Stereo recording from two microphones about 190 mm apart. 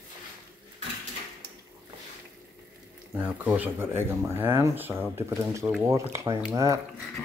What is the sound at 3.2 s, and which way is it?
Speech, 10° right (ahead or behind).